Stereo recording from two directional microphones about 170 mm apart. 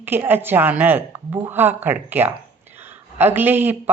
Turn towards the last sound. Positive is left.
turn(degrees=-10)  # may be behind; listen again after turning